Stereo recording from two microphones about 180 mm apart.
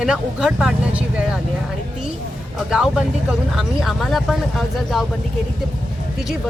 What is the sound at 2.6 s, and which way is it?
Speech, 5° right (ahead or behind).